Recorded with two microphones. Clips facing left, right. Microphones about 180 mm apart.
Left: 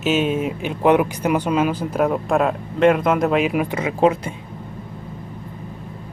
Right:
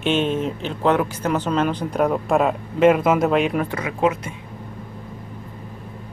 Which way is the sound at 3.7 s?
25° left (ahead or behind).